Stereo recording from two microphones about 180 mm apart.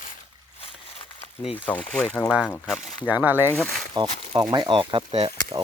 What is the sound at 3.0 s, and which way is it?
Speech, 10° right (ahead or behind).